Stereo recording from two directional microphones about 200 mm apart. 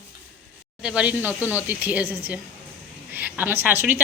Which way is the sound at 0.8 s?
5° right (ahead or behind).